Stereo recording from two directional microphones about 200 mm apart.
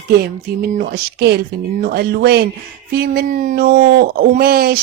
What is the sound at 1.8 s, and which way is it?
Speech, 55° right (ahead or behind).